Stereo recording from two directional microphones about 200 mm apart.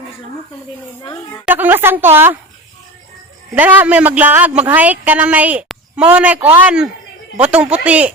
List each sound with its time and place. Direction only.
1.0 s speech: 20° left (ahead or behind)
1.5 s speech: 10° right (ahead or behind)
3.5 s speech: 10° right (ahead or behind)